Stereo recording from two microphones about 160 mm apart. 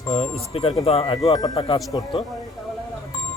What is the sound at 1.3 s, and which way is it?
Speech, 25° left (ahead or behind).